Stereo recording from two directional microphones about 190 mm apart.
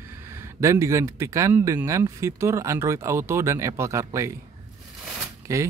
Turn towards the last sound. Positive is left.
turn(degrees=-15)  # may be behind; listen again after turning